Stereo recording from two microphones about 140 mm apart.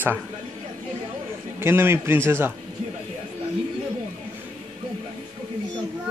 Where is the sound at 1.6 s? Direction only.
15° right (ahead or behind).